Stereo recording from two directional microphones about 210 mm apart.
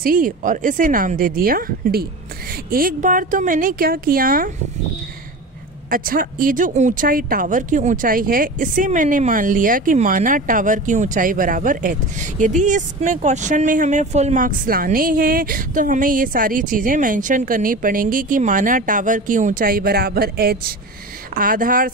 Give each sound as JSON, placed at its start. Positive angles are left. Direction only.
{"t": 0.0, "sound": "speech", "side_deg": -40}
{"t": 5.9, "sound": "a woman's voice", "side_deg": -45}